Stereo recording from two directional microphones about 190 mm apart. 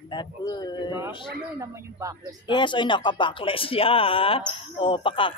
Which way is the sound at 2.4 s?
25° left (ahead or behind).